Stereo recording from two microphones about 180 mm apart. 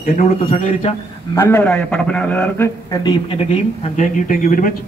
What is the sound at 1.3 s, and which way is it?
A man's voice, 10° left (ahead or behind).